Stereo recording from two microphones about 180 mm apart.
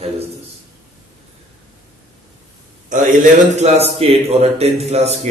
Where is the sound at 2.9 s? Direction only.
45° right (ahead or behind).